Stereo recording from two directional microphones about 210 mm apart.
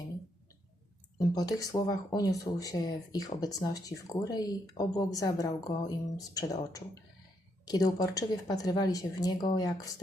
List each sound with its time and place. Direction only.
1.2 s speech: 15° left (ahead or behind)